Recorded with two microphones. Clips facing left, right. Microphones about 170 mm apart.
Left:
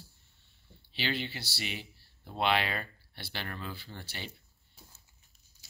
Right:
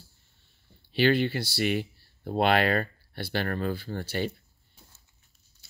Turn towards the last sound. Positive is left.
turn(degrees=-50)  # may be behind; listen again after turning